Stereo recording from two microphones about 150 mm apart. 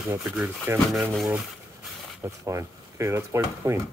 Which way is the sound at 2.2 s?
20° right (ahead or behind).